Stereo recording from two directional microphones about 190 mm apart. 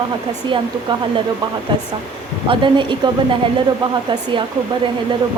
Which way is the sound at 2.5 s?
25° right (ahead or behind).